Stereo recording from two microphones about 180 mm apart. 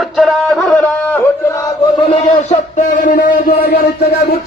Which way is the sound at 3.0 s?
50° left (ahead or behind).